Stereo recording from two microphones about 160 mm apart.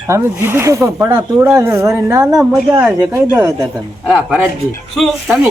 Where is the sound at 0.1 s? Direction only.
15° right (ahead or behind).